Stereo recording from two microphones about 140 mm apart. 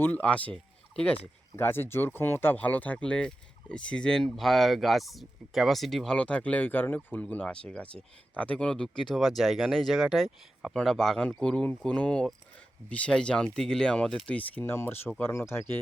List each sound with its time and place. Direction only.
0.0 s speech: 10° left (ahead or behind)